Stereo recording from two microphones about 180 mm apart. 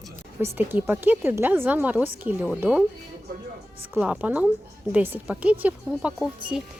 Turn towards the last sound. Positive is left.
turn(degrees=-5)  # may be behind; listen again after turning